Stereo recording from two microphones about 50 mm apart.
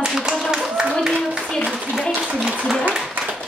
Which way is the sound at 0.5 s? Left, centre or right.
Centre.